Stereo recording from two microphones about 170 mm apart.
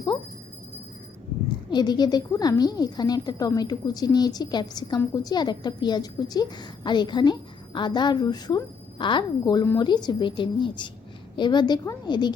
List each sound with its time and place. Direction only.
1.7 s a woman's voice: 25° left (ahead or behind)